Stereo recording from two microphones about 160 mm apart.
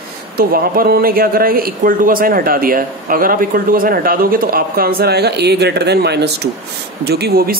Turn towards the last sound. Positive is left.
turn(degrees=-80)